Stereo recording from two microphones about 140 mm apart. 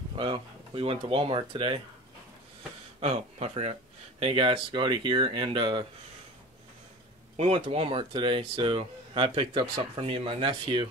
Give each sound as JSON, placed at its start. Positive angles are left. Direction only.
{"t": 0.1, "sound": "speech", "side_deg": -40}
{"t": 3.0, "sound": "speech", "side_deg": -50}
{"t": 7.3, "sound": "speech", "side_deg": -50}